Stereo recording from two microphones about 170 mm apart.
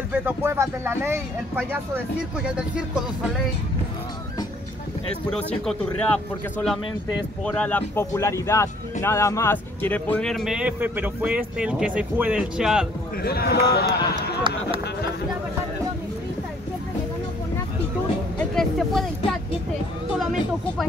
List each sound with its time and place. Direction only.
0.1 s speech: 10° right (ahead or behind)
5.5 s a man's voice: 5° left (ahead or behind)
13.2 s speech: 70° left (ahead or behind)
18.5 s speech: centre (ahead or behind)